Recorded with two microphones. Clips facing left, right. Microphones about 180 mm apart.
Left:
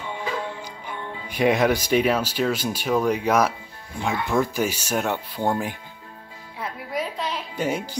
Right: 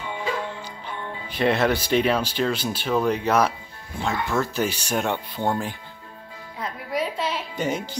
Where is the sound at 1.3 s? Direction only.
10° left (ahead or behind).